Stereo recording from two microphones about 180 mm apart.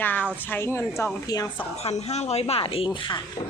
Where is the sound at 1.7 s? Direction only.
35° left (ahead or behind).